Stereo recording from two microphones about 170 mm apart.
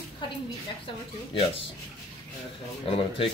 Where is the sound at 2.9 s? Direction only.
30° left (ahead or behind).